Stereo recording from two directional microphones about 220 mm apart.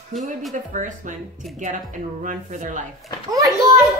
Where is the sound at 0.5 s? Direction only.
35° right (ahead or behind).